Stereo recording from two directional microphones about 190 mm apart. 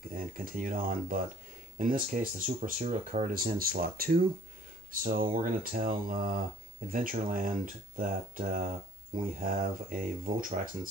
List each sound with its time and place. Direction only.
0.1 s speech: 45° right (ahead or behind)